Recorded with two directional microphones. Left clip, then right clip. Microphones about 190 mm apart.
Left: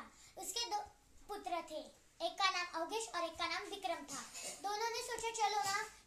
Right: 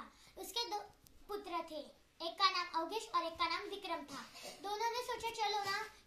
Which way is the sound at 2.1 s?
25° left (ahead or behind).